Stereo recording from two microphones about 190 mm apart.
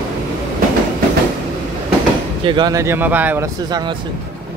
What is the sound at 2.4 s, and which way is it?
Speech, 25° right (ahead or behind).